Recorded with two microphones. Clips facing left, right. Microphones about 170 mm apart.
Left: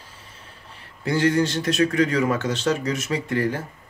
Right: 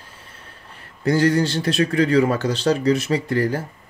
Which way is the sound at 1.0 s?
40° right (ahead or behind).